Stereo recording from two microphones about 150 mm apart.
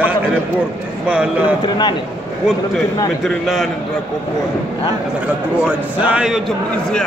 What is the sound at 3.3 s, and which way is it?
Speech, centre (ahead or behind).